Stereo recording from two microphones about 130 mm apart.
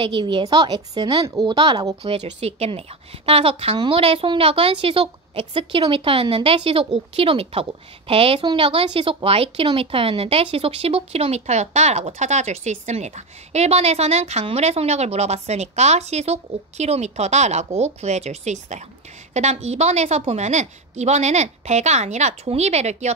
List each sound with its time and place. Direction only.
0.0 s a woman's voice: 40° right (ahead or behind)
2.0 s a woman's voice: 55° right (ahead or behind)